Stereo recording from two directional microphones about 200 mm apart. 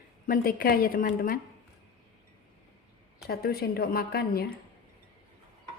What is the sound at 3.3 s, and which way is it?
A woman's voice, 50° left (ahead or behind).